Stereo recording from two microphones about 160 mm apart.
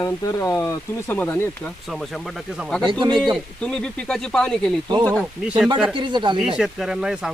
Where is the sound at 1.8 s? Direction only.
Centre (ahead or behind).